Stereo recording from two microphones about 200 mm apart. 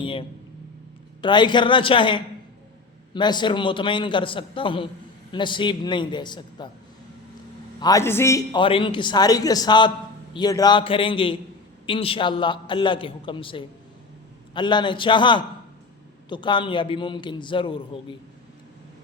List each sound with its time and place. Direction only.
0.0 s a sound: 25° left (ahead or behind)
1.2 s a man's voice: 20° left (ahead or behind)
7.8 s a man's voice: 15° left (ahead or behind)